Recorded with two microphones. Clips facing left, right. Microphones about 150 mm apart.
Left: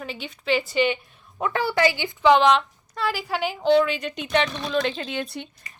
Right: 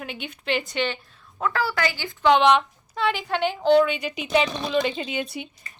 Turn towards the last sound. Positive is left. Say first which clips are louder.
# right 1 dB
turn(degrees=-5)  # may be behind; listen again after turning